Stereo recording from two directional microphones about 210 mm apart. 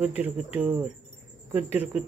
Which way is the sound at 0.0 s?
5° right (ahead or behind).